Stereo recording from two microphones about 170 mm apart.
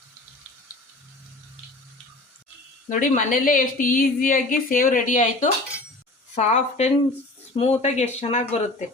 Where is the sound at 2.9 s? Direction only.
50° left (ahead or behind).